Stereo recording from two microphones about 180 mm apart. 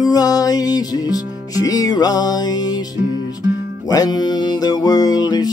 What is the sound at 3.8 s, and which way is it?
Music, 20° left (ahead or behind).